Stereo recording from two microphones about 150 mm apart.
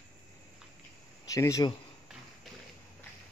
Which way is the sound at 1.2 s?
20° left (ahead or behind).